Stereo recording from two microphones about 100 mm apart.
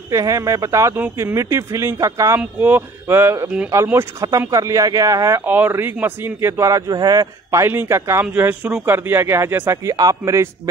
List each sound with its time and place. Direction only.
0.1 s a man's voice: 30° right (ahead or behind)
2.6 s a man's voice: 20° right (ahead or behind)
5.4 s a man's voice: 20° right (ahead or behind); by 7.6 s 40° right (ahead or behind)
7.6 s a man's voice: 20° right (ahead or behind)
9.8 s speech: 35° right (ahead or behind)